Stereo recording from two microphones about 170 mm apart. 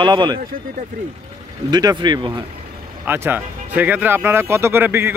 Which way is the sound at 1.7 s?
25° right (ahead or behind).